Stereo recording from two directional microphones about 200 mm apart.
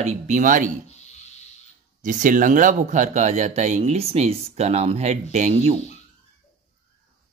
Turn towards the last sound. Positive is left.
turn(degrees=-30)  # may be behind; listen again after turning